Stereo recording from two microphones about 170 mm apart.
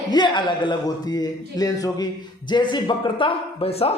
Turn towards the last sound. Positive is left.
turn(degrees=35)  # may be behind; listen again after turning